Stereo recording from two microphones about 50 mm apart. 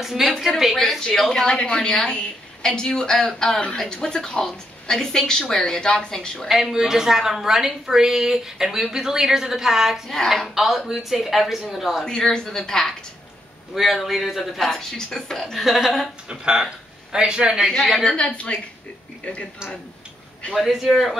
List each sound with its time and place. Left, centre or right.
0.0 s a woman's voice: centre
0.3 s a woman's voice: centre
1.3 s a woman's voice: centre
6.5 s a woman's voice: centre
10.0 s a woman's voice: centre
12.0 s a woman's voice: centre
13.7 s a woman's voice: centre
14.6 s a woman's voice: centre
16.3 s speech: centre
17.6 s a woman's voice: centre
18.0 s a woman's voice: centre
20.5 s a woman's voice: centre